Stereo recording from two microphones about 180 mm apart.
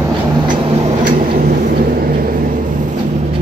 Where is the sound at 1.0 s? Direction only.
50° right (ahead or behind).